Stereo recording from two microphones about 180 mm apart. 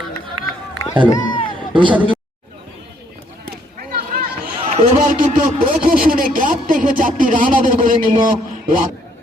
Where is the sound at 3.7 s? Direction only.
55° right (ahead or behind).